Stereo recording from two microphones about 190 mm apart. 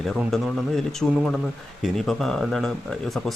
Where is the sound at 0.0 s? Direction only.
Centre (ahead or behind).